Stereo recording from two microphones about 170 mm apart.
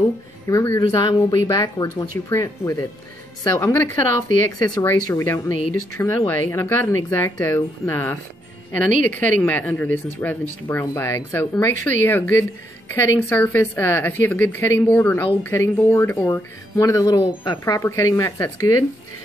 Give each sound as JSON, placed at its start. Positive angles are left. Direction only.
{"t": 0.5, "sound": "speech", "side_deg": 20}